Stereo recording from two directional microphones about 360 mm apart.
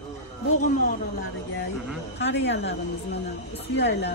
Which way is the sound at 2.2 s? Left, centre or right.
Left.